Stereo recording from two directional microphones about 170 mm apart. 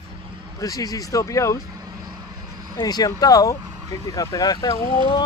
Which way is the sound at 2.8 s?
20° left (ahead or behind).